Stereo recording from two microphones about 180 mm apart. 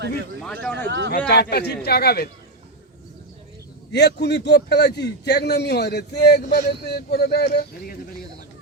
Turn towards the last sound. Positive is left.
turn(degrees=60)  # may be behind; listen again after turning